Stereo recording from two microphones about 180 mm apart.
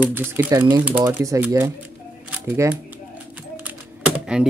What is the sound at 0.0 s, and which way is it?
Speech, 10° right (ahead or behind).